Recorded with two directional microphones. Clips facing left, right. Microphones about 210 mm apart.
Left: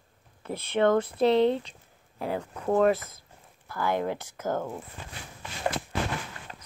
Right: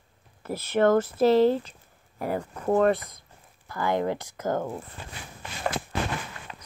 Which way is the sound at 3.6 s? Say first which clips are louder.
Right 2 dB; 15° right (ahead or behind).